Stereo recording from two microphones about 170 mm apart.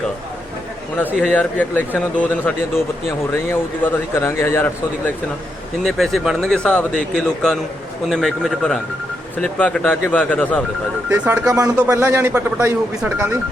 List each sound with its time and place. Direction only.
1.2 s a man's voice: 10° left (ahead or behind)
5.8 s a man's voice: centre (ahead or behind)
11.1 s speech: 20° right (ahead or behind)